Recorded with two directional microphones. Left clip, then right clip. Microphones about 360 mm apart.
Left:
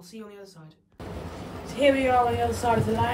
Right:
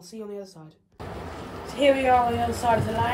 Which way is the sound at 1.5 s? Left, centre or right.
Centre.